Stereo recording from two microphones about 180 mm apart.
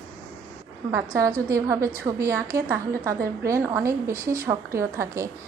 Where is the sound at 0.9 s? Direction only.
15° right (ahead or behind).